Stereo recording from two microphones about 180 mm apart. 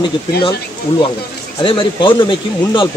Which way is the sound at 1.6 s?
30° left (ahead or behind).